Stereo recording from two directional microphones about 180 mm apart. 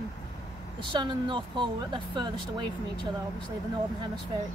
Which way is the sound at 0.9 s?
25° right (ahead or behind).